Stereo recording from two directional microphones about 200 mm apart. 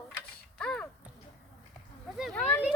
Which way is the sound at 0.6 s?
5° left (ahead or behind).